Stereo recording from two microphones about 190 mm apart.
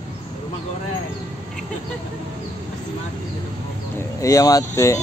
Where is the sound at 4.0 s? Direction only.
15° left (ahead or behind).